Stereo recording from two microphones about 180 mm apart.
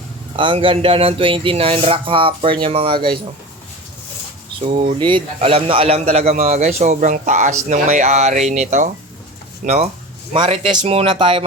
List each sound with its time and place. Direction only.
0.3 s speech: 30° right (ahead or behind)
4.6 s a man's voice: 35° right (ahead or behind)
9.6 s a man's voice: 35° right (ahead or behind)